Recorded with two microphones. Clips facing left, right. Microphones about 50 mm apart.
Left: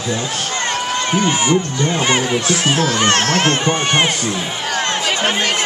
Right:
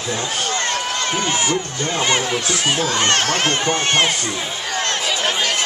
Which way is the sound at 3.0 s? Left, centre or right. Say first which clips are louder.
Left 3 dB; left.